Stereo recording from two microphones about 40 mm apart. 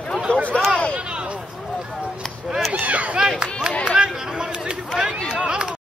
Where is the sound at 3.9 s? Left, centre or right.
Centre.